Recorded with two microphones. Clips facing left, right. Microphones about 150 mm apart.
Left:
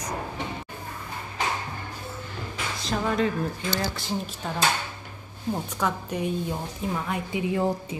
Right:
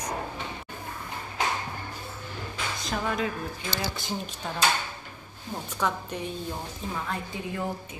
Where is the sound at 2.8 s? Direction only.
Centre (ahead or behind).